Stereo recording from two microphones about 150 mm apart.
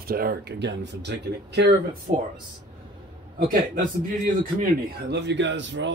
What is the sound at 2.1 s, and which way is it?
Speech, 60° right (ahead or behind).